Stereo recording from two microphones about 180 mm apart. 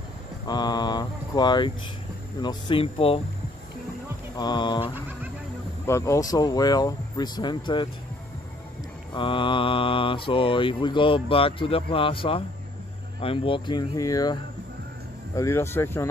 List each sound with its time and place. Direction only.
0.5 s mantra: 25° left (ahead or behind)
2.4 s speech: 30° left (ahead or behind)
4.4 s mantra: 25° left (ahead or behind)
5.9 s mantra: 15° left (ahead or behind)
9.1 s mantra: 30° left (ahead or behind)
15.3 s speech: 15° left (ahead or behind)